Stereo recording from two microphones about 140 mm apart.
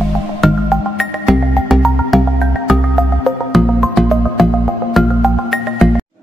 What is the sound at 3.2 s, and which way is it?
Music, centre (ahead or behind).